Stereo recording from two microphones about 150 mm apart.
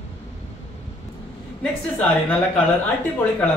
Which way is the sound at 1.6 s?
5° left (ahead or behind).